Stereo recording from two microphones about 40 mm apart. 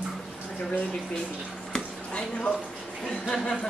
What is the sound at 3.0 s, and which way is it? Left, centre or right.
Speech, centre.